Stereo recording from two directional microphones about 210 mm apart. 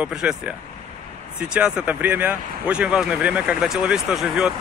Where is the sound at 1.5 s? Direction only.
5° right (ahead or behind).